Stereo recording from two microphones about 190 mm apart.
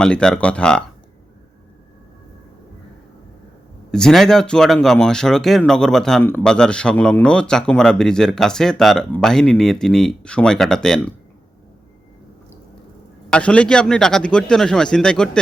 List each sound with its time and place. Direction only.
0.0 s speech: 5° left (ahead or behind)
3.9 s speech: 5° left (ahead or behind)
13.3 s speech: 5° left (ahead or behind)